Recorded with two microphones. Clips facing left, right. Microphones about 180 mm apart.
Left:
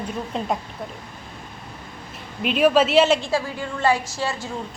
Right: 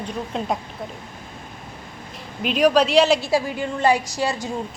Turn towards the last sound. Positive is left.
turn(degrees=-15)  # may be behind; listen again after turning